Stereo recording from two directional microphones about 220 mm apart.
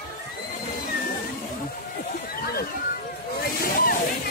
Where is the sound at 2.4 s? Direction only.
45° left (ahead or behind).